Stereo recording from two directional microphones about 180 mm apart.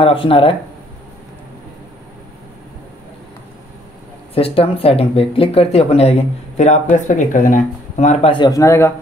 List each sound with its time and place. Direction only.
0.0 s speech: 30° left (ahead or behind)
4.4 s speech: 30° left (ahead or behind)
8.3 s a man's voice: 20° left (ahead or behind)